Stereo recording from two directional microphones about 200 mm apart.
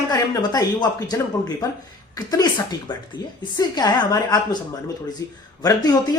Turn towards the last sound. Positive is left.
turn(degrees=20)  # may be behind; listen again after turning